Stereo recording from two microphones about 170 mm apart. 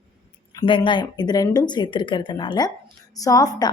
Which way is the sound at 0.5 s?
30° left (ahead or behind).